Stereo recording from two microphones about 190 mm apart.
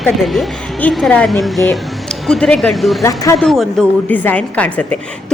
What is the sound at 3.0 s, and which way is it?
Speech, 15° left (ahead or behind).